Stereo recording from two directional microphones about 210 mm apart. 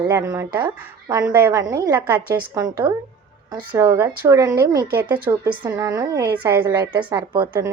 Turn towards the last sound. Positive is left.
turn(degrees=-15)  # may be behind; listen again after turning